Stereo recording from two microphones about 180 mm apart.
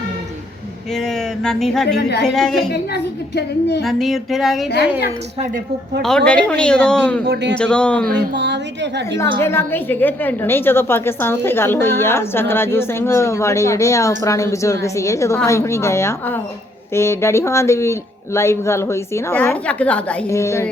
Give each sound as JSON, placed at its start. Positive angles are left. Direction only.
{"t": 0.9, "sound": "a sound", "side_deg": 0}
{"t": 1.9, "sound": "a woman's voice", "side_deg": 65}
{"t": 2.2, "sound": "a man's voice", "side_deg": 5}
{"t": 2.9, "sound": "a woman's voice", "side_deg": 70}
{"t": 3.8, "sound": "a man's voice", "side_deg": 0}
{"t": 6.0, "sound": "a man's voice", "side_deg": 5}
{"t": 8.0, "sound": "a woman's voice", "side_deg": -70}
{"t": 9.4, "sound": "a woman's voice", "side_deg": 15}